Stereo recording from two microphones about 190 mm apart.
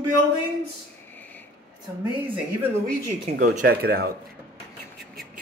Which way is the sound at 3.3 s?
50° right (ahead or behind).